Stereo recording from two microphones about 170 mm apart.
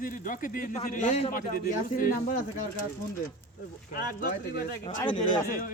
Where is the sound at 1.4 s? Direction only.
55° left (ahead or behind).